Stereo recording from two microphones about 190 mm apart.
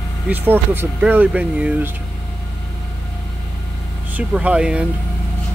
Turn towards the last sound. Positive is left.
turn(degrees=-5)  # may be behind; listen again after turning